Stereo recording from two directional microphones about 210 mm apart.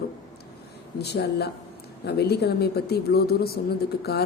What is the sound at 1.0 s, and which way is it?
A woman's voice, 50° left (ahead or behind).